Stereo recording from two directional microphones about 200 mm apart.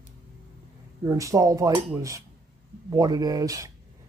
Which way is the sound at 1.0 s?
15° right (ahead or behind).